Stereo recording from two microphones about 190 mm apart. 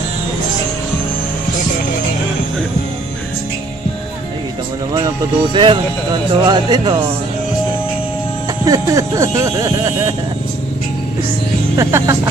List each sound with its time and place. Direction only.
4.9 s speech: 20° right (ahead or behind)
8.6 s speech: 15° right (ahead or behind)
11.7 s speech: 15° right (ahead or behind)